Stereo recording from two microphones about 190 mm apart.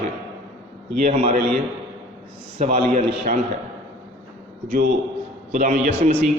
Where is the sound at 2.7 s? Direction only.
40° right (ahead or behind).